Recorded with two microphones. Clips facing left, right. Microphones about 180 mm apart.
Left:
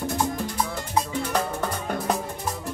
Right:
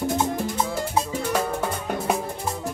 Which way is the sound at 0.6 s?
25° right (ahead or behind).